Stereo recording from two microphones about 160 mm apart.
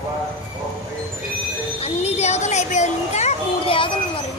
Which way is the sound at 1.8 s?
40° left (ahead or behind).